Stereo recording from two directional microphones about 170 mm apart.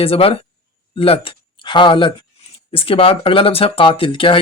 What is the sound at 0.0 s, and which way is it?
Speech, 35° left (ahead or behind).